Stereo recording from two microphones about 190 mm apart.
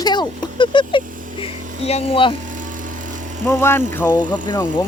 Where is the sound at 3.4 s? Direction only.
10° left (ahead or behind).